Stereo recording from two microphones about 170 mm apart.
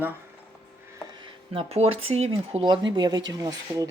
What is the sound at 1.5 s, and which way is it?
Speech, 35° right (ahead or behind).